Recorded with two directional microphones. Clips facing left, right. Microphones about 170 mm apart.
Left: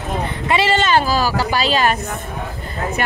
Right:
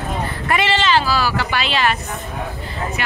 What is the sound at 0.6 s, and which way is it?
A woman's voice, 45° left (ahead or behind).